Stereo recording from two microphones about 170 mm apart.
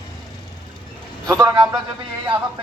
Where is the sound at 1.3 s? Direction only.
20° right (ahead or behind).